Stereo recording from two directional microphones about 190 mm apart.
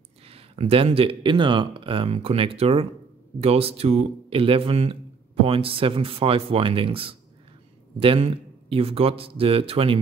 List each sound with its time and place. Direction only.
0.3 s a man's voice: 30° right (ahead or behind)